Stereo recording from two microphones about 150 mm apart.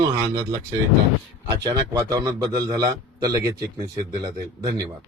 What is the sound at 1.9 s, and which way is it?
Speech, 25° right (ahead or behind).